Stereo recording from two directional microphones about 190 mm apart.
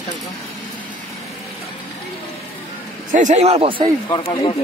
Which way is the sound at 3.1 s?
40° right (ahead or behind).